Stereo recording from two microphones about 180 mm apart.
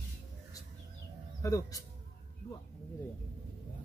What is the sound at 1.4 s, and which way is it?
Speech, 20° left (ahead or behind).